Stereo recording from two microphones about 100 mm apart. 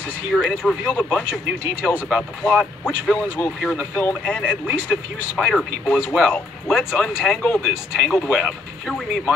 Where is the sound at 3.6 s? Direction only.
5° left (ahead or behind).